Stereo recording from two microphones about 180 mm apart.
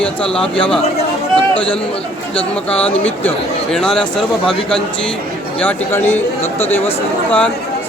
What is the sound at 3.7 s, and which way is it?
Speech, 5° left (ahead or behind).